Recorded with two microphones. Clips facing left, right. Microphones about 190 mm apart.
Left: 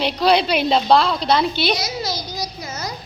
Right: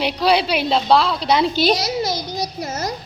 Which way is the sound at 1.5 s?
40° right (ahead or behind).